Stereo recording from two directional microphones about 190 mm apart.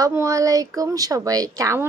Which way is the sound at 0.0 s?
15° right (ahead or behind).